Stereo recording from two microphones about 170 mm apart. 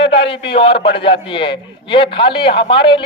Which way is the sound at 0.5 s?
30° left (ahead or behind).